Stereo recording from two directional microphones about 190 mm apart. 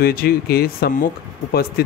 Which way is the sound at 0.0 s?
55° left (ahead or behind).